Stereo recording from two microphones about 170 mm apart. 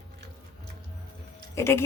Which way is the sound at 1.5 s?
15° left (ahead or behind).